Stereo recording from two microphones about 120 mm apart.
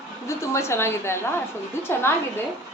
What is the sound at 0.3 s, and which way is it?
A woman's voice, 25° left (ahead or behind).